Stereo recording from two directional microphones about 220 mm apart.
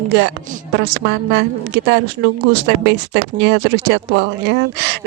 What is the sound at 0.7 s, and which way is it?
Speech, 50° right (ahead or behind).